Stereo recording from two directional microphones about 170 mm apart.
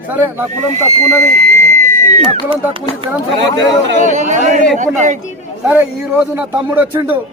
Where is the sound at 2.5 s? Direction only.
30° right (ahead or behind).